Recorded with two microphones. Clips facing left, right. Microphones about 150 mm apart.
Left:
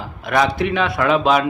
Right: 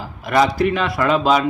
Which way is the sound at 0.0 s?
Centre (ahead or behind).